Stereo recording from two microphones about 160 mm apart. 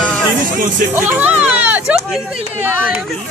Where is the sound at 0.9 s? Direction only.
10° right (ahead or behind).